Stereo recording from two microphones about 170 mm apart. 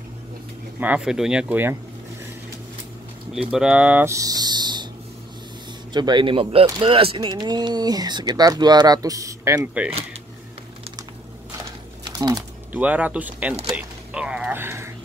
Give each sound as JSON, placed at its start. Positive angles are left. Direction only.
{"t": 0.7, "sound": "speech", "side_deg": -10}
{"t": 3.3, "sound": "speech", "side_deg": -5}
{"t": 5.9, "sound": "speech", "side_deg": -25}
{"t": 12.1, "sound": "typing", "side_deg": -20}
{"t": 12.7, "sound": "speech", "side_deg": -10}